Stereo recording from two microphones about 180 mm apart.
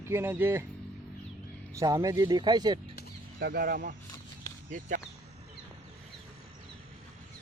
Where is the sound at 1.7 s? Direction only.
20° right (ahead or behind).